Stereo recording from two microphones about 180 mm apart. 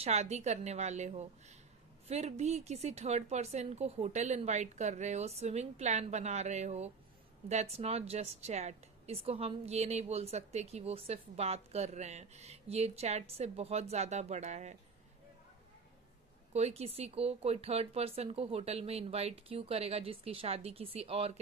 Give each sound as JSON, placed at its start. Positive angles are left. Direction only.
{"t": 0.0, "sound": "a woman's voice", "side_deg": -35}
{"t": 16.5, "sound": "a woman's voice", "side_deg": -35}